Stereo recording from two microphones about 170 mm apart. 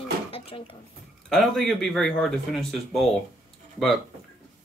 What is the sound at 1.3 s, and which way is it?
Speech, 5° left (ahead or behind).